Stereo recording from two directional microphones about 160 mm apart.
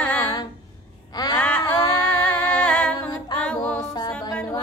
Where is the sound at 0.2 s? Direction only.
25° left (ahead or behind).